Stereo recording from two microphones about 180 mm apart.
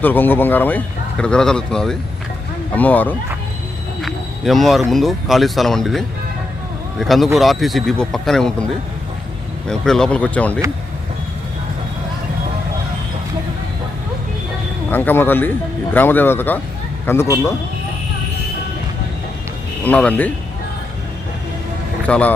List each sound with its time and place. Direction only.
0.0 s speech: 10° left (ahead or behind)
9.6 s speech: 5° left (ahead or behind)
14.8 s speech: 10° left (ahead or behind)
19.8 s speech: 10° left (ahead or behind)
22.0 s speech: 5° left (ahead or behind)